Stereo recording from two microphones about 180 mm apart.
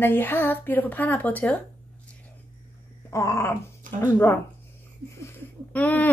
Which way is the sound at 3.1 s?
15° left (ahead or behind).